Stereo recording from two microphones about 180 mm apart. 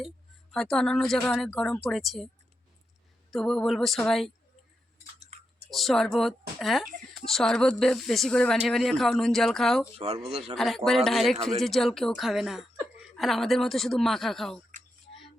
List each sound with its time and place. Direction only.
0.5 s speech: centre (ahead or behind)
3.3 s speech: 5° left (ahead or behind)
5.2 s tick-tock: 35° right (ahead or behind)
5.7 s speech: centre (ahead or behind)